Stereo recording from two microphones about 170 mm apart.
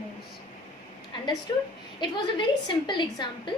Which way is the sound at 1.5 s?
25° left (ahead or behind).